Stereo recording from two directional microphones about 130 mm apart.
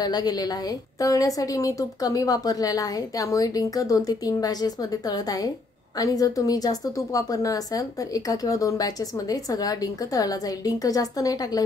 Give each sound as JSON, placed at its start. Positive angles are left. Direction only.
{"t": 0.0, "sound": "a woman's voice", "side_deg": 30}